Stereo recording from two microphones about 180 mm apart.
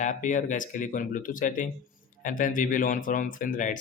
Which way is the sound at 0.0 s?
45° left (ahead or behind).